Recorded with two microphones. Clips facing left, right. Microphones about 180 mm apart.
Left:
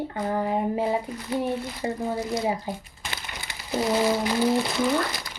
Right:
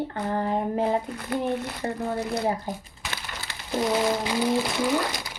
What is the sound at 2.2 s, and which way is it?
Speech, 65° right (ahead or behind).